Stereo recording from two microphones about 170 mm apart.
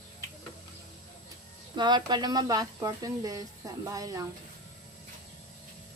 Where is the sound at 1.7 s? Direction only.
25° right (ahead or behind).